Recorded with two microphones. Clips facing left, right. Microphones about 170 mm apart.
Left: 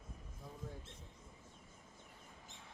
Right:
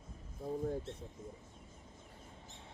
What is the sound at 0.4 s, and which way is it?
Speech, 45° right (ahead or behind).